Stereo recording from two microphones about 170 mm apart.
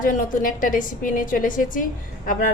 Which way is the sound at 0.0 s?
50° left (ahead or behind).